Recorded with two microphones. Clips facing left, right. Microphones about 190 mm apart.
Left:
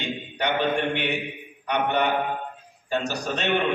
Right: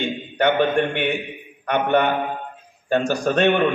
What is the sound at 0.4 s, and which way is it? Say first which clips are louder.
A man's voice: right 6 dB; 50° right (ahead or behind).